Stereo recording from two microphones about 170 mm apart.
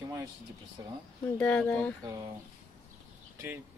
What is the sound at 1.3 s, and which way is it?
Speech, 10° left (ahead or behind).